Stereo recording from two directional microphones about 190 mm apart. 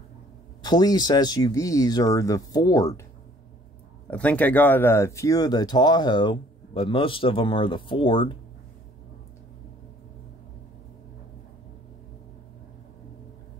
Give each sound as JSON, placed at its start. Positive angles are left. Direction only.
{"t": 0.6, "sound": "speech", "side_deg": 20}
{"t": 4.1, "sound": "speech", "side_deg": 10}